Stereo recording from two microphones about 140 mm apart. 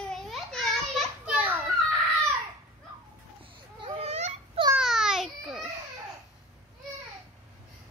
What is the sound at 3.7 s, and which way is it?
Children playing, 40° right (ahead or behind).